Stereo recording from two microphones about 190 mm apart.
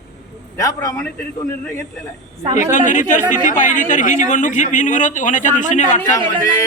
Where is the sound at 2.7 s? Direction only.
40° left (ahead or behind).